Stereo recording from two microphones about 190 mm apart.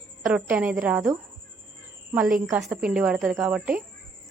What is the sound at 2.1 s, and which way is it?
A woman's voice, 5° right (ahead or behind).